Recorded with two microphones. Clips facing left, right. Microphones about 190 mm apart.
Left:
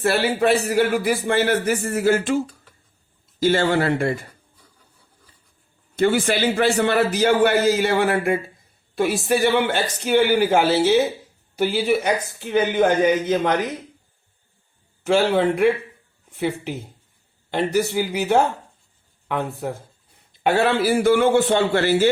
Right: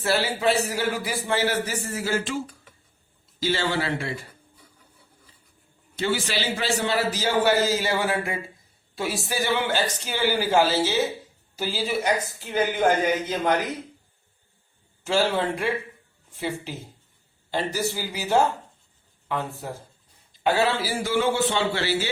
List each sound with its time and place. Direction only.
0.0 s speech: 60° left (ahead or behind)
3.4 s speech: 50° left (ahead or behind)
6.0 s speech: 55° left (ahead or behind)
15.0 s speech: 60° left (ahead or behind)
17.5 s speech: 60° left (ahead or behind)